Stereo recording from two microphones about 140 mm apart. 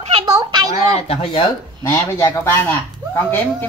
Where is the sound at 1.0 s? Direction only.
45° left (ahead or behind).